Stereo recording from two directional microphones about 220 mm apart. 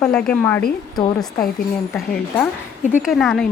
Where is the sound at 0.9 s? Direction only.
20° left (ahead or behind).